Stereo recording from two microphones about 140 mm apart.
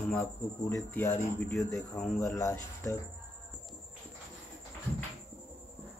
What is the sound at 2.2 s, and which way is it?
Speech, 20° left (ahead or behind).